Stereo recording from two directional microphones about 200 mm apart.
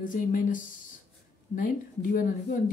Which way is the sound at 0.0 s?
40° left (ahead or behind).